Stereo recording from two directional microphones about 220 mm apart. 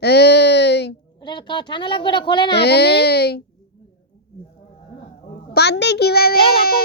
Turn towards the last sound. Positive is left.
turn(degrees=45)  # may be behind; listen again after turning